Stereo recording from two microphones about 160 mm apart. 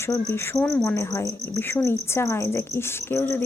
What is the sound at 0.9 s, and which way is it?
Speech, 15° left (ahead or behind).